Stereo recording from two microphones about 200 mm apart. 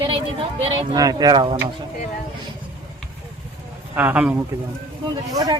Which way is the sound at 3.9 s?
5° right (ahead or behind).